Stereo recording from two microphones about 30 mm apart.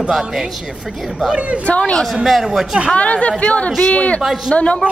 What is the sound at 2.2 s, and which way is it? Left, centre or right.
Speech, centre.